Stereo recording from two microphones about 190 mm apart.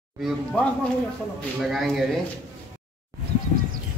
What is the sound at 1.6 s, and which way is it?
Speech, centre (ahead or behind).